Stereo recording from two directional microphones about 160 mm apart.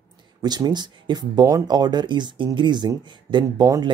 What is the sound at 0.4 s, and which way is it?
Speech, 25° right (ahead or behind).